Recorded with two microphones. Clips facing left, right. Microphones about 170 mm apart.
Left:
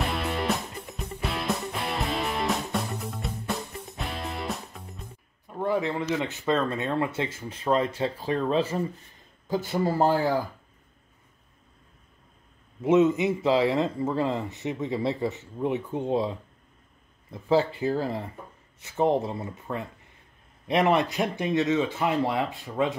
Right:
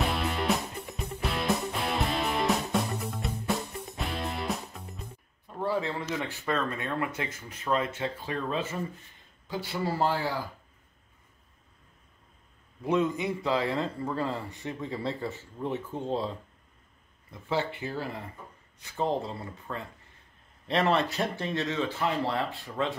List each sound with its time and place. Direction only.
0.0 s music: centre (ahead or behind)
5.5 s speech: 15° left (ahead or behind); by 8.7 s 35° left (ahead or behind)
9.5 s speech: 45° left (ahead or behind)
12.8 s speech: 20° left (ahead or behind)
17.3 s speech: 35° left (ahead or behind); by 22.9 s 20° left (ahead or behind)